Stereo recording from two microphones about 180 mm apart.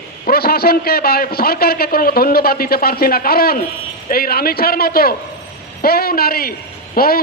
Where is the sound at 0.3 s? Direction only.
60° left (ahead or behind).